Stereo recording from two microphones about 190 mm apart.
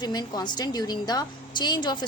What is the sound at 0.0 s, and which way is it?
A woman's voice, 20° left (ahead or behind).